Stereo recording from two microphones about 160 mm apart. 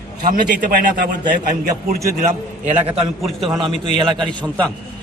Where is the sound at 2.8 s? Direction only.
Centre (ahead or behind).